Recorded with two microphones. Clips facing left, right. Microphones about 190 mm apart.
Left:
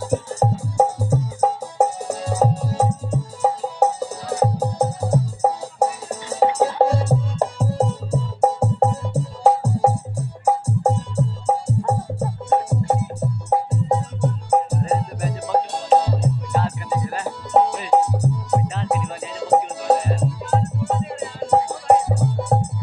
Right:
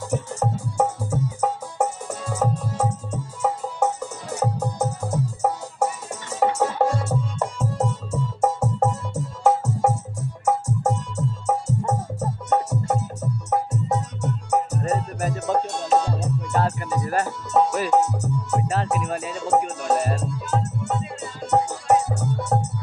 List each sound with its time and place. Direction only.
0.1 s music: 35° left (ahead or behind)
16.5 s music: 45° right (ahead or behind)
17.5 s music: 35° left (ahead or behind)